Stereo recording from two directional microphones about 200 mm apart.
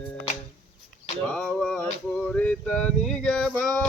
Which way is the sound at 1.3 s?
5° left (ahead or behind).